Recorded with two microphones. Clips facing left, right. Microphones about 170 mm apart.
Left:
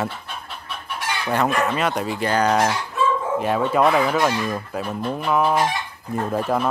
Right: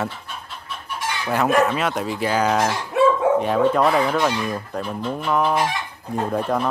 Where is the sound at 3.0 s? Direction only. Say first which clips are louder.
Right 7 dB; 65° right (ahead or behind).